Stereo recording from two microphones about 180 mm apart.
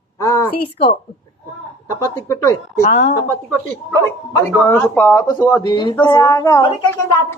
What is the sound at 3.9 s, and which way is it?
A woman's voice, 15° left (ahead or behind).